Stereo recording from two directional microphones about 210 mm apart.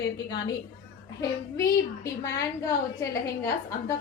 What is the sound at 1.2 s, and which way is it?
A woman's voice, 15° left (ahead or behind).